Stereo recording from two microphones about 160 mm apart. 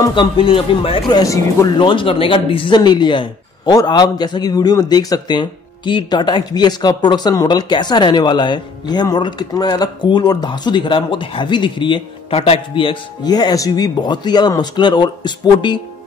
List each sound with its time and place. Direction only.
0.0 s speech: 30° left (ahead or behind)
1.8 s speech: 30° left (ahead or behind)